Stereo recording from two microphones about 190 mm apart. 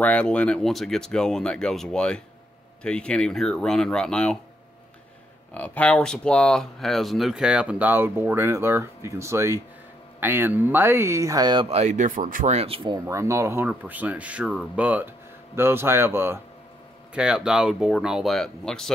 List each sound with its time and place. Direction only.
0.0 s speech: 5° left (ahead or behind)
5.5 s speech: 5° left (ahead or behind); by 11.6 s 20° right (ahead or behind)
11.7 s speech: 40° right (ahead or behind); by 18.9 s 5° left (ahead or behind)